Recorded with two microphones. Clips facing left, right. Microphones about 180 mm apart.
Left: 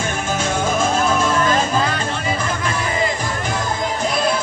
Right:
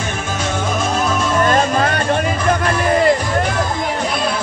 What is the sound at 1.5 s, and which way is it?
Music, 60° right (ahead or behind).